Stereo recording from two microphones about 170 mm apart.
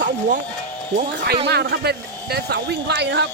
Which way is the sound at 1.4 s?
75° right (ahead or behind).